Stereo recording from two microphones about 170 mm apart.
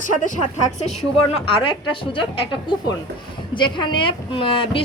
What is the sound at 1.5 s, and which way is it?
Speech, 30° left (ahead or behind).